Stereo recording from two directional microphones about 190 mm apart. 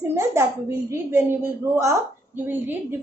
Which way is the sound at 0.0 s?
15° right (ahead or behind).